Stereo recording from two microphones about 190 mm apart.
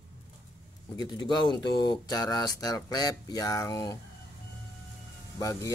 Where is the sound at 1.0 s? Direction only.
20° left (ahead or behind).